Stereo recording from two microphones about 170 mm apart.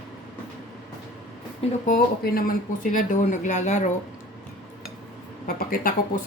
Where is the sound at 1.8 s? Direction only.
50° left (ahead or behind).